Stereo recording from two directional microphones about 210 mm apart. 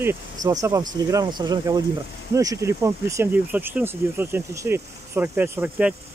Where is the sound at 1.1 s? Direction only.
20° right (ahead or behind).